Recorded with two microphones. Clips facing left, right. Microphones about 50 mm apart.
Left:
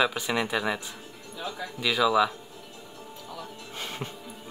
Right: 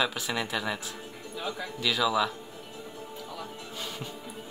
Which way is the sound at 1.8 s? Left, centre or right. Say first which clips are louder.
Left 4 dB; centre.